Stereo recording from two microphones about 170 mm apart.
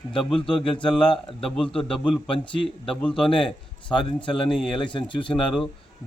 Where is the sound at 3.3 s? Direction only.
30° left (ahead or behind).